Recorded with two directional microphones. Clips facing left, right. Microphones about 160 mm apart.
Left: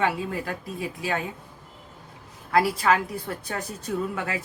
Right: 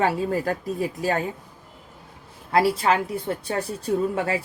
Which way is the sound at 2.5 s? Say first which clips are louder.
Right 2 dB; 30° right (ahead or behind).